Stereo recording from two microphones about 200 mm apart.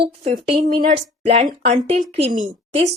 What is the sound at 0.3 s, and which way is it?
A woman's voice, 35° right (ahead or behind).